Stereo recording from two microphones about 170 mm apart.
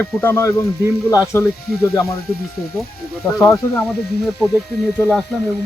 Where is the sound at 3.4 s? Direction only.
10° left (ahead or behind).